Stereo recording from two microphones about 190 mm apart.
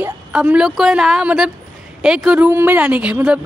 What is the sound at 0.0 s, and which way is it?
Speech, 5° right (ahead or behind).